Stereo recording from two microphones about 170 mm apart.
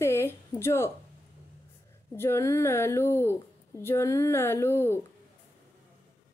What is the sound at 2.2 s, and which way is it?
A woman's voice, 15° left (ahead or behind).